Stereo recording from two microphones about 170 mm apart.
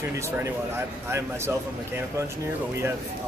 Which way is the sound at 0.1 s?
15° right (ahead or behind).